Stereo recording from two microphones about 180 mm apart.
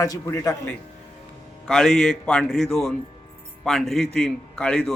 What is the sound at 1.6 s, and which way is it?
A man's voice, 5° left (ahead or behind).